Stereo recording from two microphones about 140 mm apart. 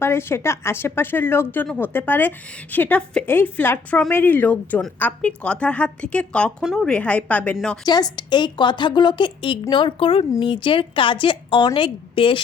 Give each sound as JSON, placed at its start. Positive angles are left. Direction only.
{"t": 0.0, "sound": "a woman's voice", "side_deg": 15}
{"t": 7.9, "sound": "a woman's voice", "side_deg": 30}